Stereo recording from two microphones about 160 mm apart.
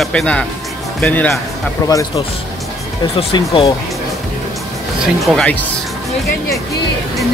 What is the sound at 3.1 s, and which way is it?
Speech, 30° left (ahead or behind).